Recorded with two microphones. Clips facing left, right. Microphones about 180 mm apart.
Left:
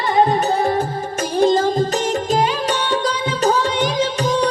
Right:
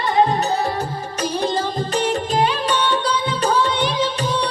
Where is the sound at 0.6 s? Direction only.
50° left (ahead or behind).